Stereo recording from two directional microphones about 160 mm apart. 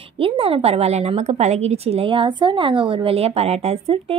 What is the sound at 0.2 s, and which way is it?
A woman's voice, 35° right (ahead or behind).